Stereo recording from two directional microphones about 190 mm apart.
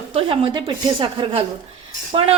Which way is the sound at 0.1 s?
30° right (ahead or behind).